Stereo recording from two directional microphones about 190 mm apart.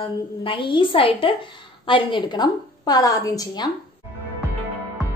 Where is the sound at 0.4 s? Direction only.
25° left (ahead or behind).